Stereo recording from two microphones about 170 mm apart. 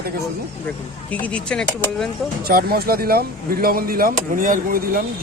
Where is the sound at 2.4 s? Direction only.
65° right (ahead or behind).